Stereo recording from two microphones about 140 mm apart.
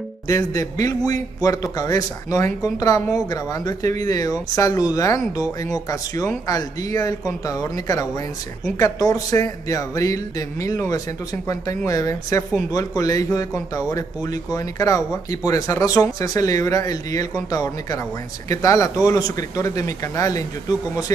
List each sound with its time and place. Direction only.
0.3 s speech: 25° left (ahead or behind)